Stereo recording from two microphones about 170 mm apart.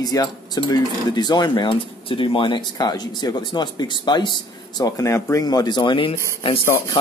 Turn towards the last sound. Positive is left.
turn(degrees=30)  # may be behind; listen again after turning